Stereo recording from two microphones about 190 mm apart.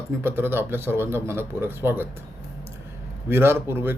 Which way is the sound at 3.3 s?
10° right (ahead or behind).